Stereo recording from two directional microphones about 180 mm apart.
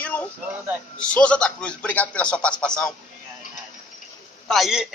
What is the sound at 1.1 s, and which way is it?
A man's voice, 5° left (ahead or behind).